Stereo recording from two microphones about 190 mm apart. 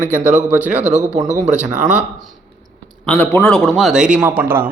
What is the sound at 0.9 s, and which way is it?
Speech, 40° right (ahead or behind).